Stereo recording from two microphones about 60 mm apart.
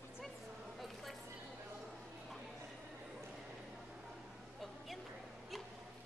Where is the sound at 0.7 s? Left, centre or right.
Centre.